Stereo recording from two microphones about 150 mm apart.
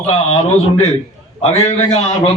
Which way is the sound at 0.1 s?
45° left (ahead or behind).